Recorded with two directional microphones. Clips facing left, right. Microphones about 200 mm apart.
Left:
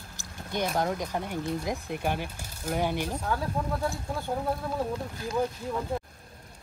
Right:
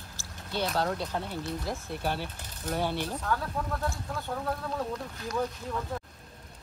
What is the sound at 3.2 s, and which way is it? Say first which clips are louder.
Speech: left 2 dB; 25° left (ahead or behind).